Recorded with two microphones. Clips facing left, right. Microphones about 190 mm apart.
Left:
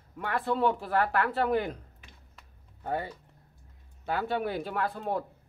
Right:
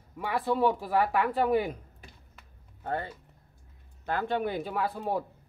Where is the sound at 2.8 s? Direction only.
10° left (ahead or behind).